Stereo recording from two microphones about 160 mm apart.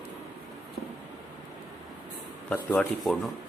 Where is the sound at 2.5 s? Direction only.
10° left (ahead or behind).